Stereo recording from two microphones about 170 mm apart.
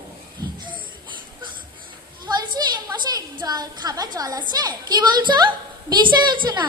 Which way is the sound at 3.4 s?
25° right (ahead or behind).